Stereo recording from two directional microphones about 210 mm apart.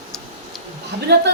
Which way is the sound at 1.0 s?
55° right (ahead or behind).